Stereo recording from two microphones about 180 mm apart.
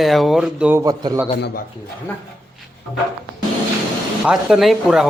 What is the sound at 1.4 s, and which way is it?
Speech, 65° left (ahead or behind).